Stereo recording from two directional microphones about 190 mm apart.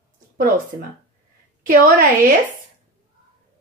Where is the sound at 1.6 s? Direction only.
45° right (ahead or behind).